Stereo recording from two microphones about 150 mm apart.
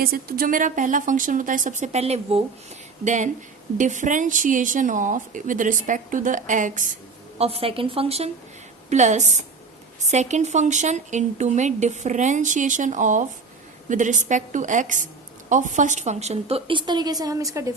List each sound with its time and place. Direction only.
0.0 s speech: 80° right; by 6.8 s 60° right (ahead or behind)
7.3 s a woman's voice: 40° right (ahead or behind); by 17.7 s 20° right (ahead or behind)